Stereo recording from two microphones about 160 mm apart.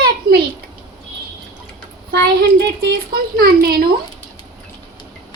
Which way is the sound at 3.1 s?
70° right (ahead or behind).